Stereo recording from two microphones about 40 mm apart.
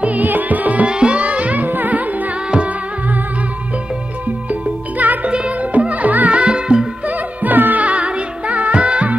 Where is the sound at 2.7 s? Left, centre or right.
Right.